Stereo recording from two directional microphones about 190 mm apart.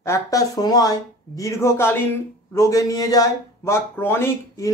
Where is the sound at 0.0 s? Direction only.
15° left (ahead or behind).